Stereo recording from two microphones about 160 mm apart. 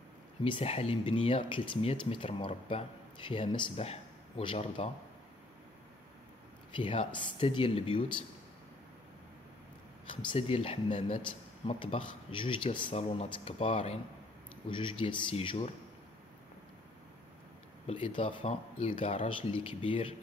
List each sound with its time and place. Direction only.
0.4 s speech: 35° left (ahead or behind)
6.7 s speech: 35° left (ahead or behind)
10.0 s speech: 40° left (ahead or behind)
17.8 s speech: 35° left (ahead or behind)